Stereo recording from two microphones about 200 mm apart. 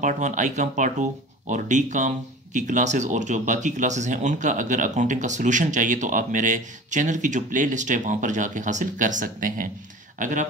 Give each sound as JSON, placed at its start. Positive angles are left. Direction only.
{"t": 0.0, "sound": "speech", "side_deg": -40}